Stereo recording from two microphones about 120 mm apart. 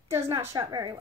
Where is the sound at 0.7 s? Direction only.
35° right (ahead or behind).